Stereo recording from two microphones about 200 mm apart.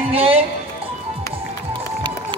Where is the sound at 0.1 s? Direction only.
30° right (ahead or behind).